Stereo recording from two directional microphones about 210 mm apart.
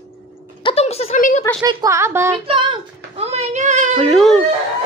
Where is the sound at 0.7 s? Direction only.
30° left (ahead or behind).